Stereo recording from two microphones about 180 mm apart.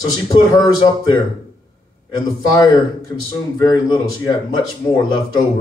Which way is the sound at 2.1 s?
25° left (ahead or behind).